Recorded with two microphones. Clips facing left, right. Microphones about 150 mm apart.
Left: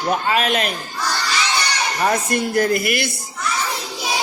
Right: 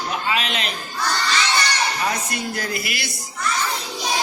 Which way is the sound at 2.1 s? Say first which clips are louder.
Left 7 dB; 50° left (ahead or behind).